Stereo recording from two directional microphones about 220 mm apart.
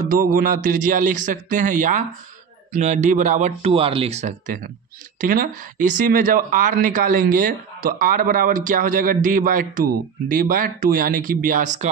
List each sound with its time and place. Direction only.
0.0 s speech: 40° right (ahead or behind)